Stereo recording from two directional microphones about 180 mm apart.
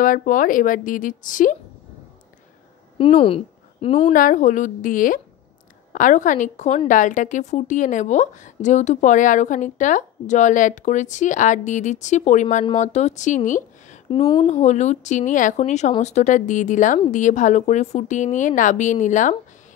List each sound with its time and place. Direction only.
0.0 s a woman's voice: 50° left (ahead or behind)
3.0 s a woman's voice: 30° left (ahead or behind)
4.1 s a woman's voice: 50° left (ahead or behind)
13.5 s a sound: 45° left (ahead or behind)
14.0 s a woman's voice: 25° left (ahead or behind)
14.5 s a woman's voice: 40° left (ahead or behind)